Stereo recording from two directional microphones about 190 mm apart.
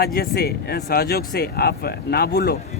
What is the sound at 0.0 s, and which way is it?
Speech, 55° left (ahead or behind).